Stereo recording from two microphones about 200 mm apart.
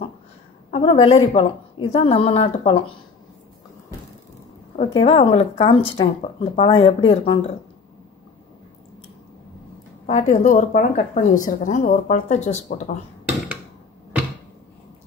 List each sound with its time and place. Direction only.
0.7 s a woman's voice: 30° left (ahead or behind)
4.7 s a woman's voice: 30° left (ahead or behind)
10.0 s speech: 35° left (ahead or behind)